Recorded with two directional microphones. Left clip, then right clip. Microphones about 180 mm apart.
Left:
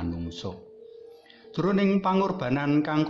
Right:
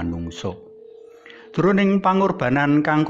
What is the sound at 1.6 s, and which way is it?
A man's voice, 25° right (ahead or behind).